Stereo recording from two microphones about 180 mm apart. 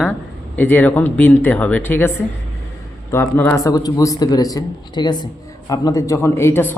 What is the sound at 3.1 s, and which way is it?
A man's voice, 10° left (ahead or behind).